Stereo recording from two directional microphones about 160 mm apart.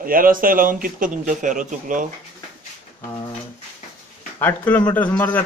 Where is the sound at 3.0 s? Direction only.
25° left (ahead or behind).